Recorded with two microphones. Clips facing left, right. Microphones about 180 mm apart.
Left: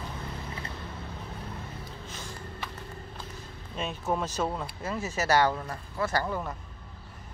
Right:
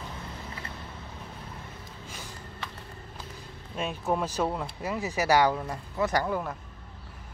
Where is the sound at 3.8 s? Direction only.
5° right (ahead or behind).